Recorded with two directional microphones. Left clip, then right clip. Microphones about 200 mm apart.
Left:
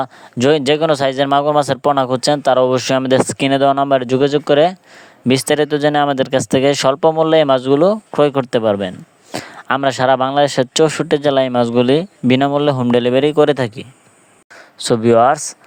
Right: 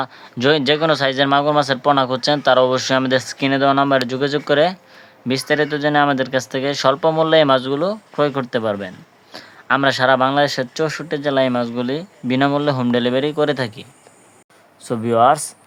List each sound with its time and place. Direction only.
0.0 s speech: 40° left (ahead or behind)